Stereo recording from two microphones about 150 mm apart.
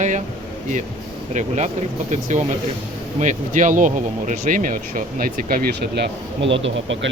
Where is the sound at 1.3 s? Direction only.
50° right (ahead or behind); by 6.1 s 90° right.